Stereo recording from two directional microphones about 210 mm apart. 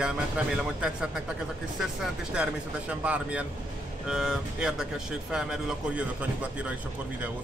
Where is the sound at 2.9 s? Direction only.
5° right (ahead or behind).